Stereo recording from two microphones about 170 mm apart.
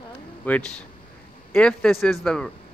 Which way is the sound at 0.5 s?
5° left (ahead or behind).